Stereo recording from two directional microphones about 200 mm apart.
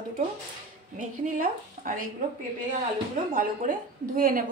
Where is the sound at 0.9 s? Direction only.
40° right (ahead or behind).